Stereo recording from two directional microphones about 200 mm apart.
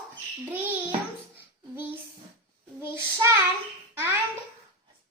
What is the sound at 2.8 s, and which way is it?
Child singing, 10° right (ahead or behind).